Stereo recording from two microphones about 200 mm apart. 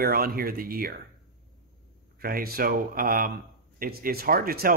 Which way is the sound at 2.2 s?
50° right (ahead or behind).